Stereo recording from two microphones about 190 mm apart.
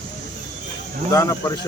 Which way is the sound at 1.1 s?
20° left (ahead or behind).